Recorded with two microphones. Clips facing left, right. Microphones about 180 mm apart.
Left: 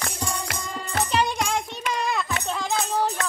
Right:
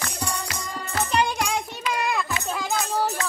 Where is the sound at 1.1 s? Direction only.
Centre (ahead or behind).